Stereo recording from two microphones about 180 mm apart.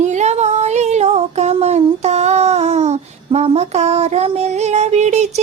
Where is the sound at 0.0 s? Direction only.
40° right (ahead or behind).